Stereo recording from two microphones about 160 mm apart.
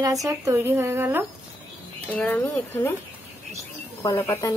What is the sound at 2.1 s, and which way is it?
Speech, 10° left (ahead or behind).